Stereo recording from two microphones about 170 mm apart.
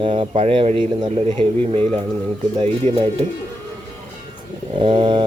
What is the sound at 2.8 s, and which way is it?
Speech, 40° right (ahead or behind).